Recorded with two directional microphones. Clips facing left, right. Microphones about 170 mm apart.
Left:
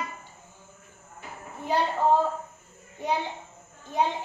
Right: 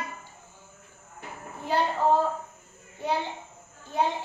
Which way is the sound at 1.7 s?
15° left (ahead or behind).